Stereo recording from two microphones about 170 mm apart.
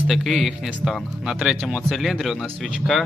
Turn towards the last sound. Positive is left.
turn(degrees=0)  # may be behind; listen again after turning